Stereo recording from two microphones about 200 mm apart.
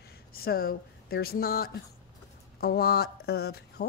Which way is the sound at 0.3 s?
50° left (ahead or behind).